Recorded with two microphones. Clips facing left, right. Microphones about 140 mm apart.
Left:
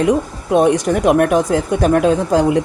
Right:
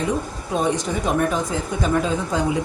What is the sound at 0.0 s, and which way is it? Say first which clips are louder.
Speech: left 8 dB; 75° left (ahead or behind).